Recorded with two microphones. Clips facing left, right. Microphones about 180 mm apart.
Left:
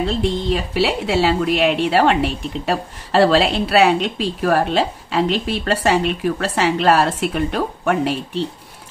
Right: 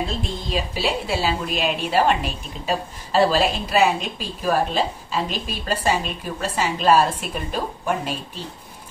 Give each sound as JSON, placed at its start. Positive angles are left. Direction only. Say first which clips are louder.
{"t": 0.7, "sound": "a woman's voice", "louder": "left 7 dB", "side_deg": 75}